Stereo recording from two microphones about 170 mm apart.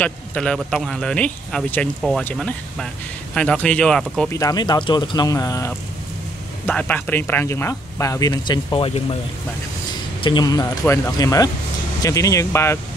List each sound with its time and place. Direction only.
0.0 s a man's voice: 5° left (ahead or behind)
4.3 s speech: 20° left (ahead or behind)
6.6 s speech: 10° left (ahead or behind); by 9.0 s 35° left (ahead or behind)
10.2 s speech: 25° left (ahead or behind)